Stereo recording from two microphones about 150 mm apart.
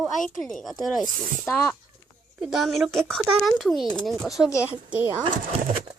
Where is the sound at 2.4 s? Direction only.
Centre (ahead or behind).